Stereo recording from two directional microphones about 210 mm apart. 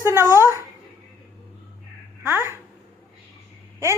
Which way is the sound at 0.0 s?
10° right (ahead or behind).